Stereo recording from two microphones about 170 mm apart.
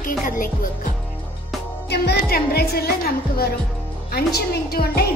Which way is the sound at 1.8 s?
75° left (ahead or behind).